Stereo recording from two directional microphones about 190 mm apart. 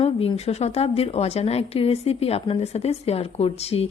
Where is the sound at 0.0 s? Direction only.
30° left (ahead or behind).